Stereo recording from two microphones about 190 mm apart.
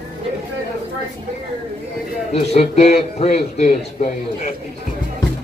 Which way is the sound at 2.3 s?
35° left (ahead or behind).